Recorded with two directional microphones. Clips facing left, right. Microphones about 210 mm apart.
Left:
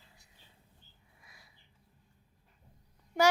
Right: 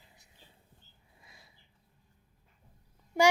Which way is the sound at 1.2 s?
25° right (ahead or behind).